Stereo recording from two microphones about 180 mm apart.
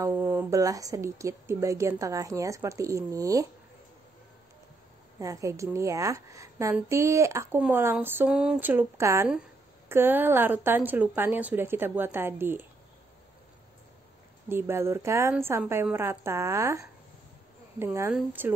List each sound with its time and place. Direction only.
0.0 s speech: 10° right (ahead or behind)
5.2 s speech: 15° right (ahead or behind)
14.5 s speech: 15° right (ahead or behind)